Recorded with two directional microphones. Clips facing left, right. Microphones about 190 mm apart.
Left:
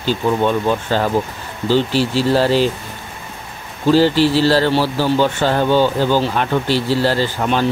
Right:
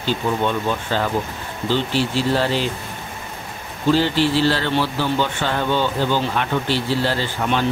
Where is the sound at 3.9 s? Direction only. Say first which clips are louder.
Left 5 dB; 40° left (ahead or behind).